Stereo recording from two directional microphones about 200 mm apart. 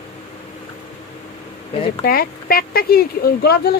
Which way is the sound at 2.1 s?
45° left (ahead or behind).